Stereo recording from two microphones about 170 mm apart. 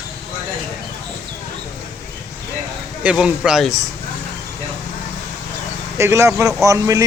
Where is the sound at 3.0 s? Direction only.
5° right (ahead or behind).